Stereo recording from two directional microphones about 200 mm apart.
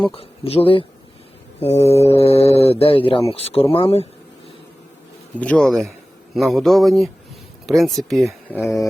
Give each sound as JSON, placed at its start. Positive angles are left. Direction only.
{"t": 0.1, "sound": "speech", "side_deg": 30}
{"t": 5.4, "sound": "speech", "side_deg": 5}